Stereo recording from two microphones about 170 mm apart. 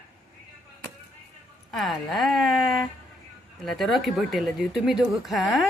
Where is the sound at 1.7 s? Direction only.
Centre (ahead or behind).